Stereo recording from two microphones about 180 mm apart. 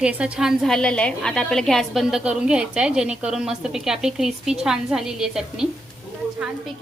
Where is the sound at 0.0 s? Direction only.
5° right (ahead or behind).